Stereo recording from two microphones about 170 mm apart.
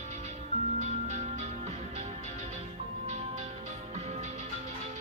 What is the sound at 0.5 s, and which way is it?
Music, 45° right (ahead or behind).